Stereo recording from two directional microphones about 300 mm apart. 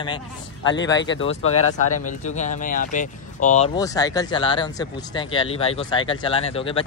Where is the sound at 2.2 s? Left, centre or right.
Left.